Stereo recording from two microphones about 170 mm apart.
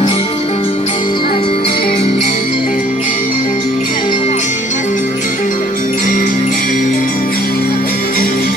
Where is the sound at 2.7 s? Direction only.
50° left (ahead or behind).